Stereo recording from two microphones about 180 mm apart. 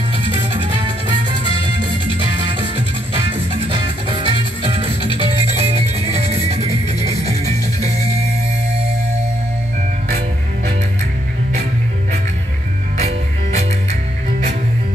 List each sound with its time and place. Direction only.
0.6 s music: 30° right (ahead or behind)
3.2 s music: 30° right (ahead or behind)
12.9 s music: 35° right (ahead or behind)